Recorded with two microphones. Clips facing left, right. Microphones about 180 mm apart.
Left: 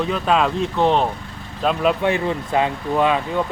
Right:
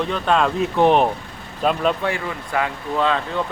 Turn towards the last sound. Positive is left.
turn(degrees=15)  # may be behind; listen again after turning